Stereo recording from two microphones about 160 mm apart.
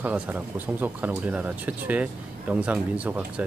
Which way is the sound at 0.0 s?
10° right (ahead or behind).